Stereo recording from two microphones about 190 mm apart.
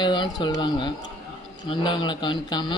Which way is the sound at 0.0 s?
25° left (ahead or behind).